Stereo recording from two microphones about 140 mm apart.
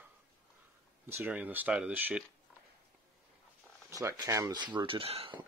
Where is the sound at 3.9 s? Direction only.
20° right (ahead or behind); by 5.3 s 40° right (ahead or behind).